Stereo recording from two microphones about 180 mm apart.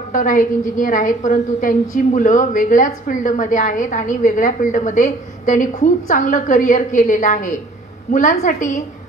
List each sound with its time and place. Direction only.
0.1 s a woman's voice: 45° left (ahead or behind)